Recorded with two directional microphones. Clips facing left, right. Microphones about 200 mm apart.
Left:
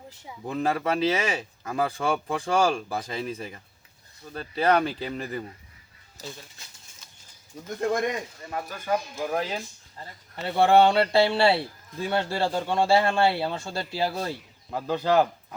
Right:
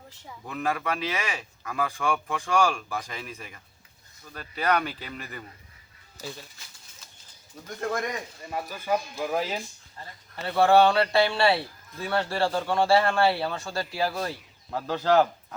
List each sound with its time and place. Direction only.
0.4 s a man's voice: 30° left (ahead or behind)
8.4 s speech: 10° right (ahead or behind)
10.4 s a man's voice: 25° left (ahead or behind)
14.7 s a man's voice: 10° left (ahead or behind)